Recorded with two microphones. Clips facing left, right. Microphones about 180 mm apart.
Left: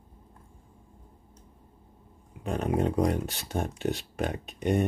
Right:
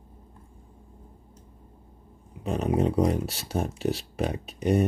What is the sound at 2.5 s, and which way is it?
Speech, 5° right (ahead or behind).